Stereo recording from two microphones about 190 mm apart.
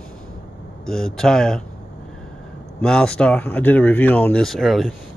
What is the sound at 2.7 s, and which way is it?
Speech, 5° left (ahead or behind).